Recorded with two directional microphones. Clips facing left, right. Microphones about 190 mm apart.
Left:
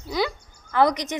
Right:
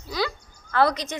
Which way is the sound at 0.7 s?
15° left (ahead or behind).